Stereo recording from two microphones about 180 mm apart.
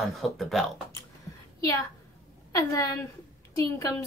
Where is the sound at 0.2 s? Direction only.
Centre (ahead or behind).